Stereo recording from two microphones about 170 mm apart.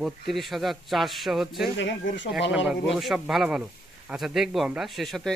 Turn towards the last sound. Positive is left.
turn(degrees=0)  # may be behind; listen again after turning